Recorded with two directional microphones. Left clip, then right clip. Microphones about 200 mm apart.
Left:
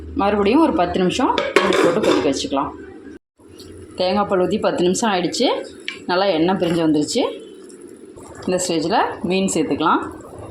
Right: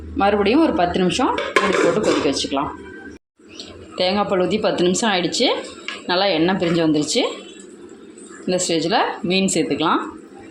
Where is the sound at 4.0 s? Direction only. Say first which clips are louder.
Left 1 dB; 5° left (ahead or behind).